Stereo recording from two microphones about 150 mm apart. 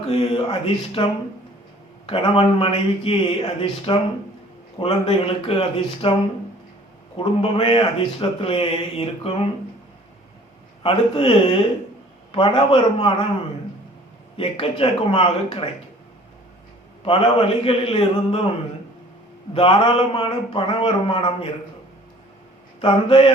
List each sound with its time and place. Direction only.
0.0 s speech: 40° left (ahead or behind)
2.0 s speech: 40° left (ahead or behind)
7.2 s speech: 35° left (ahead or behind)
10.8 s speech: 35° left (ahead or behind)
14.3 s speech: 40° left (ahead or behind)
17.1 s speech: 35° left (ahead or behind)
19.5 s speech: 35° left (ahead or behind)
22.8 s speech: 35° left (ahead or behind)